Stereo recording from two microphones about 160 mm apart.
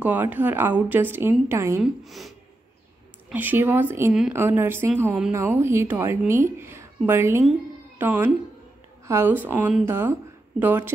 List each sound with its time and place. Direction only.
0.0 s a woman's voice: 10° right (ahead or behind)
1.8 s speech: centre (ahead or behind)
3.3 s a woman's voice: 10° right (ahead or behind)